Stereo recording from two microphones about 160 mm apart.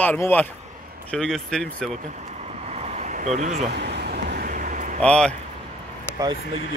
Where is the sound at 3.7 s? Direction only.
90° right; by 5.0 s 55° right (ahead or behind).